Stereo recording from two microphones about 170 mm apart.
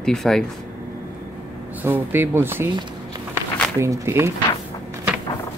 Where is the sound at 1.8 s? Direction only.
10° right (ahead or behind).